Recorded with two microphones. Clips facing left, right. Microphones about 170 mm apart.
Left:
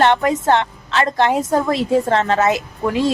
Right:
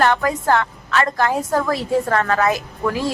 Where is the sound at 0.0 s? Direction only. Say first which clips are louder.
Left 3 dB; 25° left (ahead or behind).